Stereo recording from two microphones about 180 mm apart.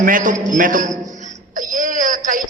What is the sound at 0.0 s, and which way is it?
A man's voice, 45° right (ahead or behind).